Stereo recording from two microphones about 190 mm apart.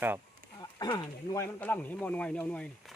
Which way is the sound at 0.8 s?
20° left (ahead or behind).